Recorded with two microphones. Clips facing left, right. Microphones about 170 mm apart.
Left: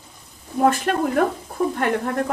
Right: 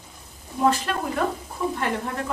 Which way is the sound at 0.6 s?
55° left (ahead or behind).